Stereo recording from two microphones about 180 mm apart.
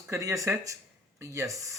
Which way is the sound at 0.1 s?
15° right (ahead or behind).